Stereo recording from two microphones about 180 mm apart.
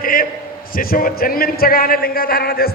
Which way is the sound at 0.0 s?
50° left (ahead or behind).